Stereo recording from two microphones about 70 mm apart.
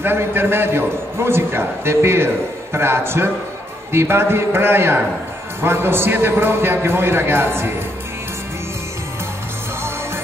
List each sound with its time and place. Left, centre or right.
0.0 s a man's voice: right